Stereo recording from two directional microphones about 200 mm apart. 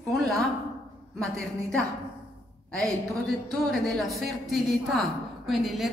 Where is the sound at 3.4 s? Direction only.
Centre (ahead or behind).